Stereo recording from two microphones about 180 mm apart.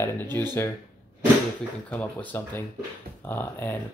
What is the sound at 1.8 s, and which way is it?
Speech, 10° left (ahead or behind).